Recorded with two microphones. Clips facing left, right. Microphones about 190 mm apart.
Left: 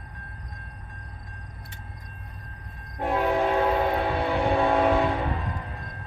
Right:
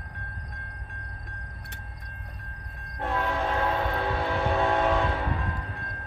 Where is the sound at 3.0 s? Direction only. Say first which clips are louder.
Left 4 dB; 15° left (ahead or behind).